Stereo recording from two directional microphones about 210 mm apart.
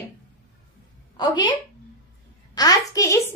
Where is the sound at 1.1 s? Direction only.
20° left (ahead or behind).